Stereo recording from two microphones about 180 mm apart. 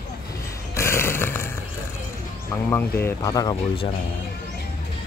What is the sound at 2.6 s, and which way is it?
Speech, 10° left (ahead or behind).